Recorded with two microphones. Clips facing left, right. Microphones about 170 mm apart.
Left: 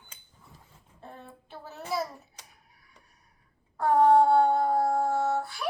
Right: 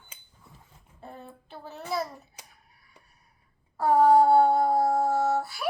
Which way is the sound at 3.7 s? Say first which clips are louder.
Right 1 dB; 5° right (ahead or behind).